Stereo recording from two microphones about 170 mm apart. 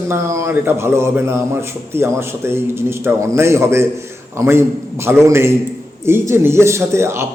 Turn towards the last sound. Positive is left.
turn(degrees=-15)  # may be behind; listen again after turning